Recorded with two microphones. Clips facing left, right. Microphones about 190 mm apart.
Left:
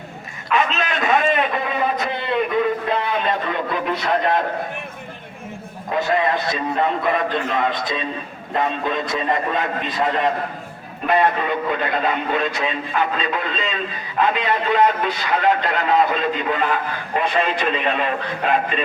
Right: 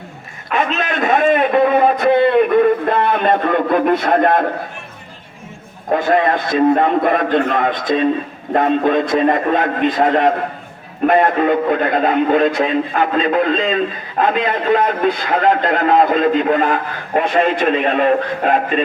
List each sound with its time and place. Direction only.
0.5 s a man's voice: 50° right (ahead or behind)
5.9 s a man's voice: 50° right (ahead or behind)